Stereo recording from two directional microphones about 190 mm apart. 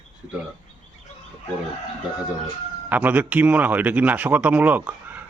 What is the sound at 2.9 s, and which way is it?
A man's voice, 10° right (ahead or behind).